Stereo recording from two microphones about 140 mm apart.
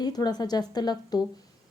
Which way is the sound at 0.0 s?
30° left (ahead or behind).